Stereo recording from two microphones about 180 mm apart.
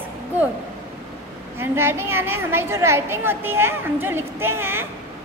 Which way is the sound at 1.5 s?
15° right (ahead or behind).